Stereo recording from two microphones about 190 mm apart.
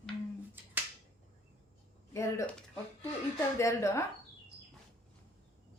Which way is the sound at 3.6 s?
15° left (ahead or behind).